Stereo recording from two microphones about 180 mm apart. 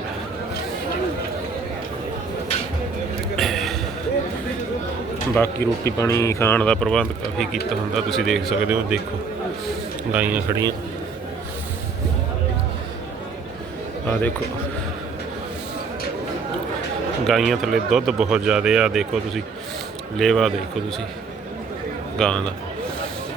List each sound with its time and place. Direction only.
3.3 s a sound: centre (ahead or behind)
5.4 s speech: 15° left (ahead or behind); by 9.0 s 5° right (ahead or behind)
10.1 s a man's voice: 10° right (ahead or behind)
14.1 s speech: 10° left (ahead or behind)
17.2 s speech: centre (ahead or behind)
22.2 s speech: 5° left (ahead or behind)